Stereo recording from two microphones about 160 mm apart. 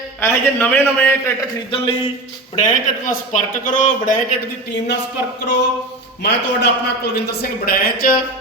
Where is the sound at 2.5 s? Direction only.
55° left (ahead or behind).